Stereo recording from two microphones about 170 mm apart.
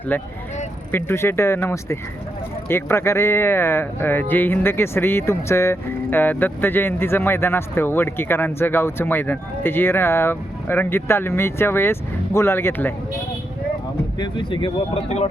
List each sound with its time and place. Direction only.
0.1 s speech: 10° left (ahead or behind)
14.2 s speech: 30° left (ahead or behind)